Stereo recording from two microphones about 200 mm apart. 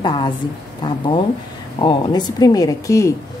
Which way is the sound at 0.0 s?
25° left (ahead or behind).